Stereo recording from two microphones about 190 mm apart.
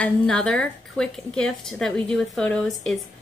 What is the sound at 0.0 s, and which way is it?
A woman's voice, 5° left (ahead or behind).